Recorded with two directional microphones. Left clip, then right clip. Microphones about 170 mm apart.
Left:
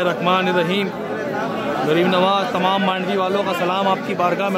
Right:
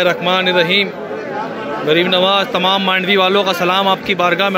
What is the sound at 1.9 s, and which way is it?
A man's voice, 5° left (ahead or behind).